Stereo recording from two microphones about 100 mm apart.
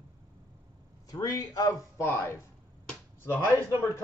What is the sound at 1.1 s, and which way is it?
Speech, 35° left (ahead or behind).